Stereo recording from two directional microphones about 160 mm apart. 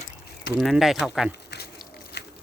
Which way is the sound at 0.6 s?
Centre (ahead or behind).